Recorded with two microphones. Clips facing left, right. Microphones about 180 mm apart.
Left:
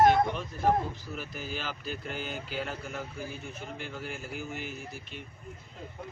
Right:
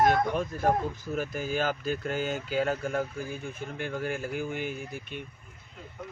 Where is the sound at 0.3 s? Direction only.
50° right (ahead or behind).